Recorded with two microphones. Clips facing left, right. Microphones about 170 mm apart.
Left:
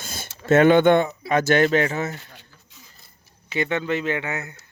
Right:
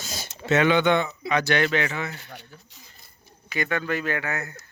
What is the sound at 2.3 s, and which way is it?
Speech, 65° right (ahead or behind).